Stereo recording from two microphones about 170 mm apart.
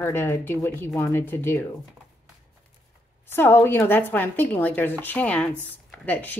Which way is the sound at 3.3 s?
15° left (ahead or behind).